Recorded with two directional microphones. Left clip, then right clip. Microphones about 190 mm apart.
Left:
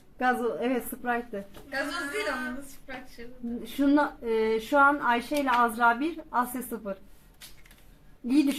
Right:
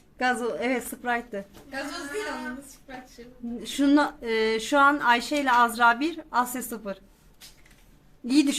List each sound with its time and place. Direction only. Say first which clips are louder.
0.2 s speech: right 1 dB; 10° right (ahead or behind)